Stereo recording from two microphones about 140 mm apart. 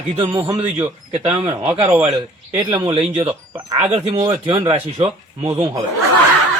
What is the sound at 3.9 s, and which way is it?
A man's voice, 45° right (ahead or behind).